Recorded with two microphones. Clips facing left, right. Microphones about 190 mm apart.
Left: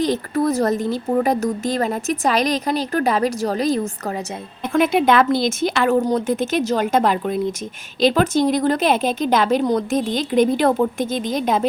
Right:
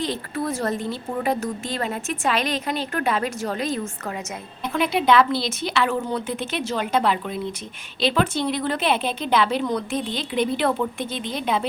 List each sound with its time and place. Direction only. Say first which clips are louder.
0.0 s a woman's voice: left 7 dB; 40° left (ahead or behind)
4.7 s a woman's voice: left 4 dB; 50° left (ahead or behind)